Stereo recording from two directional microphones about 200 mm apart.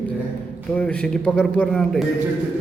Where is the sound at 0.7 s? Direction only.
5° left (ahead or behind).